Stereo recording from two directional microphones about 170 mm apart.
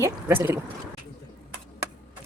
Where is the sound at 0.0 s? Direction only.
15° right (ahead or behind).